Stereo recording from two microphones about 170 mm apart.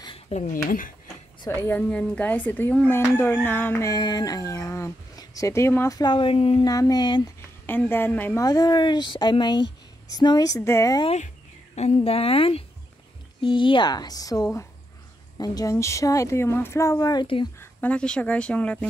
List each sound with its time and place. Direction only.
0.3 s speech: 45° left (ahead or behind)
1.4 s speech: 15° left (ahead or behind); by 6.6 s 35° left (ahead or behind)
6.6 s speech: 20° left (ahead or behind)
7.6 s speech: 10° left (ahead or behind)
8.5 s speech: 25° left (ahead or behind)
11.1 s speech: 40° left (ahead or behind)
17.6 s speech: 10° left (ahead or behind)